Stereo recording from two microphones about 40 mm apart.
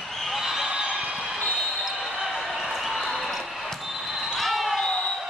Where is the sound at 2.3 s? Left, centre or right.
Centre.